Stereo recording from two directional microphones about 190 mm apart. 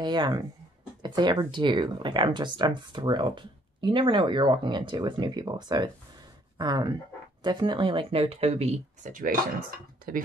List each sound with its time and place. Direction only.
0.0 s speech: 20° right (ahead or behind); by 9.4 s 45° right (ahead or behind)